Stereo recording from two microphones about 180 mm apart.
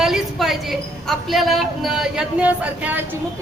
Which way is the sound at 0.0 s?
Centre (ahead or behind).